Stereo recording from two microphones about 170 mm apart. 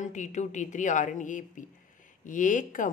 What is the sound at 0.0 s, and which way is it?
Speech, 45° left (ahead or behind).